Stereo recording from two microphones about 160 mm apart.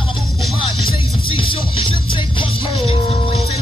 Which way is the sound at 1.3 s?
30° left (ahead or behind).